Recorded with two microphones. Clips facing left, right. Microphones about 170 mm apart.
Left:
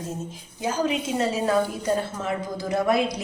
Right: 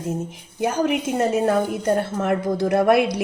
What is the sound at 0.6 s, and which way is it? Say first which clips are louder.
A woman's voice: right 4 dB; 60° right (ahead or behind).